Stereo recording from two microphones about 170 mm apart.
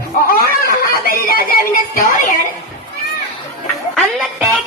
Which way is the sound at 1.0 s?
60° left (ahead or behind).